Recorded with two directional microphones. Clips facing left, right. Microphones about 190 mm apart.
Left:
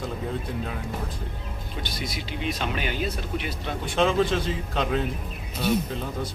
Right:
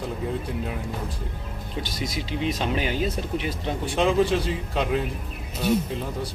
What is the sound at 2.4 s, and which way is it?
Speech, 30° right (ahead or behind).